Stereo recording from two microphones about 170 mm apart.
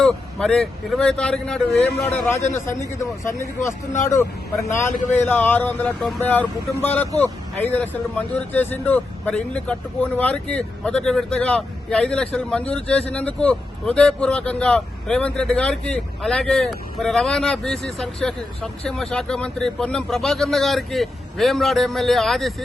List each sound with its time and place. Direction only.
0.0 s speech: 5° left (ahead or behind)
5.1 s speech: 10° left (ahead or behind)